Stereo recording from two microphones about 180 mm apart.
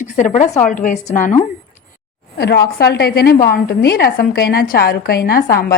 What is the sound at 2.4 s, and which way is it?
A woman's voice, 60° left (ahead or behind).